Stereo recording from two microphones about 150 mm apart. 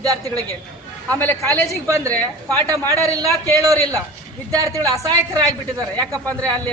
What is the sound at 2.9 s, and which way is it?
A woman's voice, 20° right (ahead or behind).